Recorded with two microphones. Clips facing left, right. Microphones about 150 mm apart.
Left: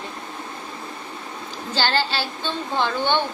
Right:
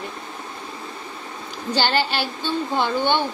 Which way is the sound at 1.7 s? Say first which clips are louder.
Right 1 dB; 15° right (ahead or behind).